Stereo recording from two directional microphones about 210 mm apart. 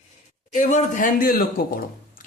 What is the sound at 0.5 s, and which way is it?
Speech, 35° left (ahead or behind).